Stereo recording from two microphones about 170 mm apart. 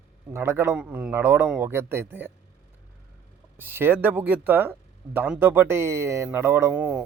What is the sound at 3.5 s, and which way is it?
Speech, 10° right (ahead or behind).